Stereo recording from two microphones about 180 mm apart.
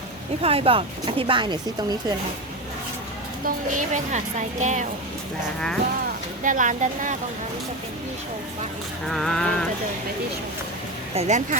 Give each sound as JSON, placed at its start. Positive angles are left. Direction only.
{"t": 0.4, "sound": "speech", "side_deg": -30}
{"t": 3.4, "sound": "a woman's voice", "side_deg": -45}
{"t": 6.4, "sound": "a woman's voice", "side_deg": -45}
{"t": 9.0, "sound": "a sound", "side_deg": 5}
{"t": 11.1, "sound": "speech", "side_deg": -40}